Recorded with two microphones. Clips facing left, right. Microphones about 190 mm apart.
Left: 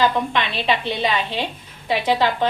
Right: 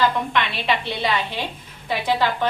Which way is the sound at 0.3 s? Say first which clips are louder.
Left 1 dB; 20° left (ahead or behind).